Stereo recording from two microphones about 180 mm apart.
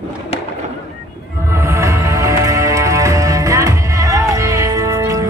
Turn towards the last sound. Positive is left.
turn(degrees=-15)  # may be behind; listen again after turning